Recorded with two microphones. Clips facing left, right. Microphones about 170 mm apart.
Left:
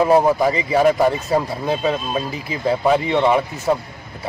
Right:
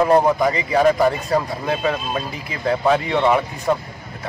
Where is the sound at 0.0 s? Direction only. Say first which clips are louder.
Left 1 dB; 5° left (ahead or behind).